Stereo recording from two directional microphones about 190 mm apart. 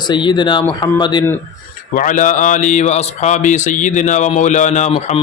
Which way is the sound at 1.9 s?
45° left (ahead or behind).